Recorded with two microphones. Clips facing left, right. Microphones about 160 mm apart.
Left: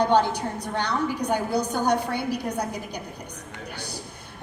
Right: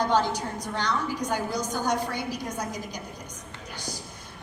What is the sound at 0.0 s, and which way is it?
A woman's voice, 60° left (ahead or behind).